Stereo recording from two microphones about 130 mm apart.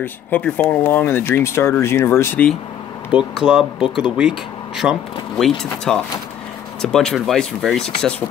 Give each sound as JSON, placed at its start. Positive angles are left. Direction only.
{"t": 0.0, "sound": "speech", "side_deg": 15}
{"t": 3.1, "sound": "speech", "side_deg": -5}